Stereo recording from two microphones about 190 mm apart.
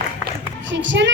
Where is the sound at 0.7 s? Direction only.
75° right (ahead or behind).